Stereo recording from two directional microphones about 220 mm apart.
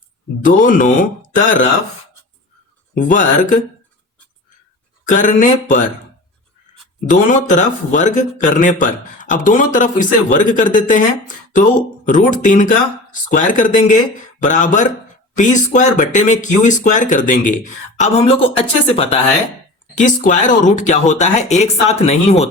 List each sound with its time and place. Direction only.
0.4 s speech: 35° left (ahead or behind)
2.9 s speech: 35° left (ahead or behind)
5.0 s speech: 35° left (ahead or behind)
7.1 s speech: 35° left (ahead or behind)
12.0 s speech: 35° left (ahead or behind)